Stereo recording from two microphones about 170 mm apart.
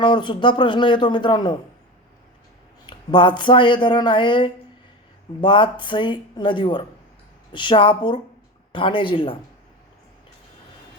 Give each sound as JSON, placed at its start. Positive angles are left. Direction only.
{"t": 0.0, "sound": "speech", "side_deg": 30}
{"t": 2.8, "sound": "speech", "side_deg": 30}